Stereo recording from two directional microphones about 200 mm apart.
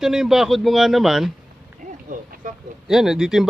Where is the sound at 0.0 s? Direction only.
Centre (ahead or behind).